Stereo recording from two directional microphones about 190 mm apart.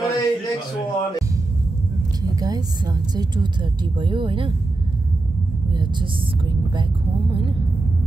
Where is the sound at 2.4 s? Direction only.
20° right (ahead or behind).